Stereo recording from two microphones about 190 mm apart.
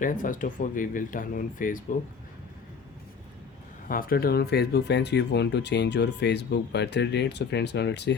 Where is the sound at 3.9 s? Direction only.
50° left (ahead or behind).